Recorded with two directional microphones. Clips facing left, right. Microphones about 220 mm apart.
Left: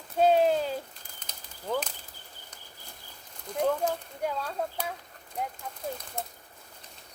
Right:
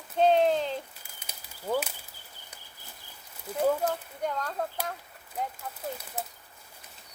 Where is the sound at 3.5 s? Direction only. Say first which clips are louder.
Right 1 dB; 5° right (ahead or behind).